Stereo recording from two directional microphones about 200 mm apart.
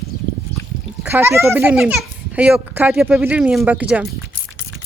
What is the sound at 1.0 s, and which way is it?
A child's voice, 10° right (ahead or behind).